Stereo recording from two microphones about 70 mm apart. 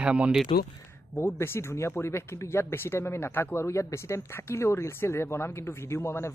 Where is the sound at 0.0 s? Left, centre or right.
Centre.